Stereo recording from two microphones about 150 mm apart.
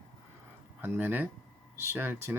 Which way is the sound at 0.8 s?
15° right (ahead or behind).